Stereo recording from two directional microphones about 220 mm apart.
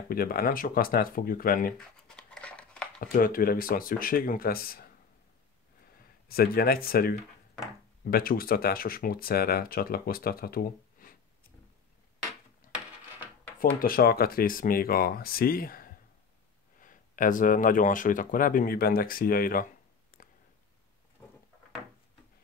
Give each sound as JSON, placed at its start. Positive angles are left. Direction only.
{"t": 0.1, "sound": "speech", "side_deg": 40}
{"t": 1.8, "sound": "a sound", "side_deg": 5}
{"t": 3.0, "sound": "speech", "side_deg": 40}
{"t": 6.2, "sound": "speech", "side_deg": 45}
{"t": 13.7, "sound": "speech", "side_deg": 40}
{"t": 20.2, "sound": "a sound", "side_deg": 40}